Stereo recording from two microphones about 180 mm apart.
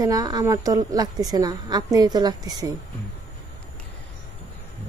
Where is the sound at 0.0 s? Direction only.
20° right (ahead or behind).